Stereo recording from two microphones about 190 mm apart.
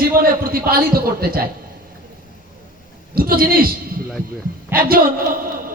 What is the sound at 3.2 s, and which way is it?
Speech, 50° right (ahead or behind).